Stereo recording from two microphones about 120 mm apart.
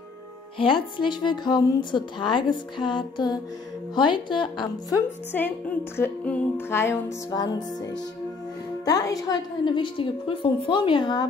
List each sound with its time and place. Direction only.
0.6 s speech: 45° left (ahead or behind)
5.3 s music: 15° left (ahead or behind)
6.7 s music: 20° left (ahead or behind)
7.2 s speech: 35° left (ahead or behind)